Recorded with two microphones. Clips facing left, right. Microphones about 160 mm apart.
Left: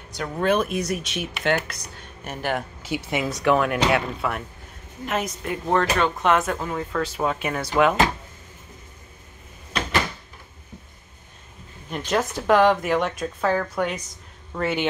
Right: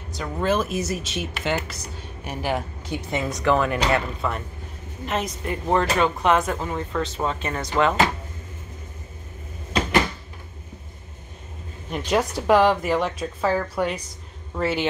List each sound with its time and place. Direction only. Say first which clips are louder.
0.1 s a woman's voice: left 1 dB; centre (ahead or behind)
2.9 s speech: left 2 dB; 80° left
3.3 s speech: left 1 dB; 5° left (ahead or behind)
11.9 s speech: right 2 dB; 10° right (ahead or behind)